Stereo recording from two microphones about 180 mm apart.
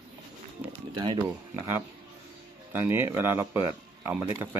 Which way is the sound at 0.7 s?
30° right (ahead or behind).